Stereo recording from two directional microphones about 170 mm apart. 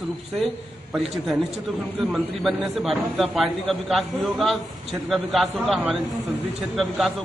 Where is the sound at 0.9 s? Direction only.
Centre (ahead or behind).